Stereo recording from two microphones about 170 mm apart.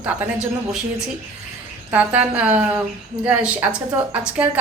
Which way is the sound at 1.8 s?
10° right (ahead or behind).